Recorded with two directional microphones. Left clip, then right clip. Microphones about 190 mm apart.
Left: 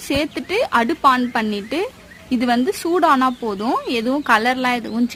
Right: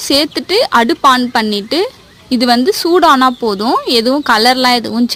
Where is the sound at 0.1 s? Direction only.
25° right (ahead or behind).